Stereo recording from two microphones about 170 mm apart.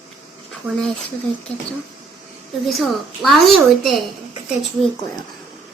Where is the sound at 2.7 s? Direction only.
Centre (ahead or behind).